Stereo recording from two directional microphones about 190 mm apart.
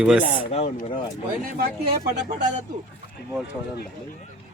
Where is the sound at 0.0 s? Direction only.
5° right (ahead or behind).